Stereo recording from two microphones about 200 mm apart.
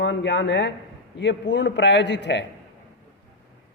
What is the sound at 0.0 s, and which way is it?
A man's voice, 65° left (ahead or behind).